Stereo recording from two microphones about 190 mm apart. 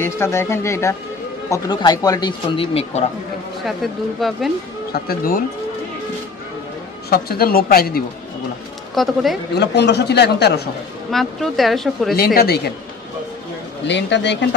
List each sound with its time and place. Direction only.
0.0 s speech: 15° left (ahead or behind); by 3.1 s 35° left (ahead or behind)
3.6 s speech: centre (ahead or behind)
4.9 s speech: 50° left (ahead or behind)
7.1 s speech: 50° left (ahead or behind)
8.9 s speech: centre (ahead or behind)
9.6 s speech: 60° left (ahead or behind)
11.1 s speech: centre (ahead or behind)
12.4 s speech: 55° left (ahead or behind)
13.8 s speech: 65° left (ahead or behind)